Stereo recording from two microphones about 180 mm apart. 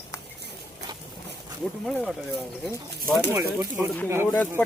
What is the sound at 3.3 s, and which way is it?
Speech, 15° right (ahead or behind).